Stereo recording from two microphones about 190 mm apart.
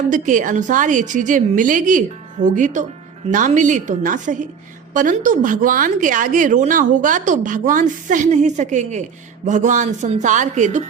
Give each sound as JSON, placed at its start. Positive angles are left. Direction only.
{"t": 0.1, "sound": "speech", "side_deg": -45}